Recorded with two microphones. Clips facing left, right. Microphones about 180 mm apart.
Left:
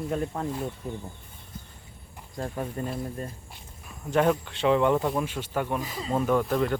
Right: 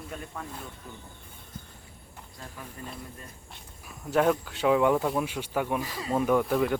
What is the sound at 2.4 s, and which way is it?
Speech, 50° left (ahead or behind).